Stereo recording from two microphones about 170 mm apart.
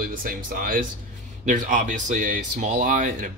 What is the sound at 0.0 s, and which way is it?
Speech, 55° right (ahead or behind).